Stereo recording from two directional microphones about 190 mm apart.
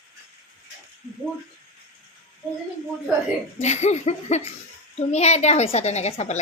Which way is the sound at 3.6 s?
35° left (ahead or behind).